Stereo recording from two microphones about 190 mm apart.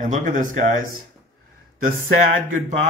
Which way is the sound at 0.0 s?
45° right (ahead or behind).